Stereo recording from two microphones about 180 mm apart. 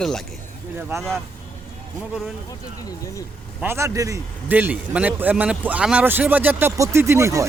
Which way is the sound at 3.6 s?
15° right (ahead or behind).